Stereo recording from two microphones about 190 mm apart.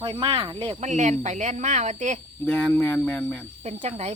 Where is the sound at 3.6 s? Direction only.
35° right (ahead or behind).